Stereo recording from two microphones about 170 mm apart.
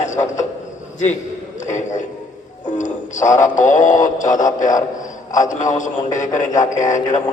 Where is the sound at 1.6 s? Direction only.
45° left (ahead or behind).